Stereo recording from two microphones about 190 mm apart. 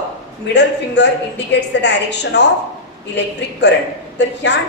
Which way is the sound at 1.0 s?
65° left (ahead or behind).